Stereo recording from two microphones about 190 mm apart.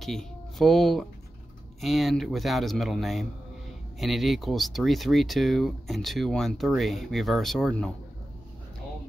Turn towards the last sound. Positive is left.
turn(degrees=0)  # may be behind; listen again after turning